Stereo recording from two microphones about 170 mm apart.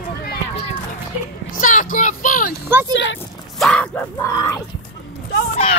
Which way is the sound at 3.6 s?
5° left (ahead or behind).